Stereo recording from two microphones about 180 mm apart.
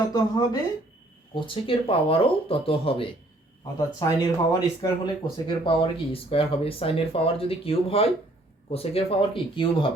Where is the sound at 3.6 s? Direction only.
20° left (ahead or behind).